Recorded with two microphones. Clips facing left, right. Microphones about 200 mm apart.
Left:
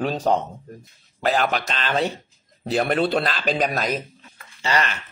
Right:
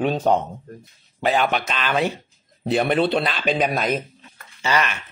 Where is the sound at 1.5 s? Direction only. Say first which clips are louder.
Right 1 dB; 40° left (ahead or behind).